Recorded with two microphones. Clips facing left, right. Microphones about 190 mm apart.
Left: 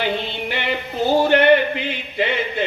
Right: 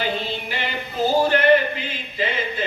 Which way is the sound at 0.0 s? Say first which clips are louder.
Left 2 dB; 65° left (ahead or behind).